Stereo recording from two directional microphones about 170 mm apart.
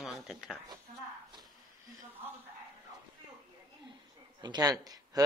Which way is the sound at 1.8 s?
20° right (ahead or behind).